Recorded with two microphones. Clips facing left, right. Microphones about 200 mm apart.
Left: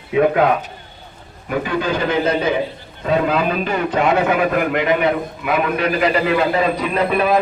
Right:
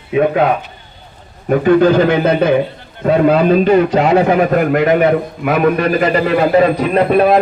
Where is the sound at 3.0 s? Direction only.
45° right (ahead or behind).